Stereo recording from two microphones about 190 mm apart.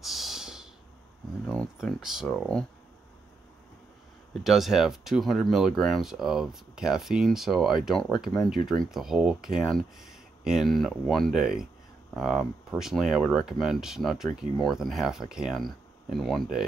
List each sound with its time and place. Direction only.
0.0 s a sound: centre (ahead or behind)
1.5 s speech: 5° left (ahead or behind)
4.4 s speech: centre (ahead or behind)
8.6 s speech: 20° left (ahead or behind)
8.9 s speech: centre (ahead or behind)